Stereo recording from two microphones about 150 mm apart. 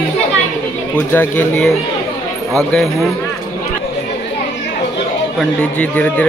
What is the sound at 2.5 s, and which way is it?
Speech, centre (ahead or behind).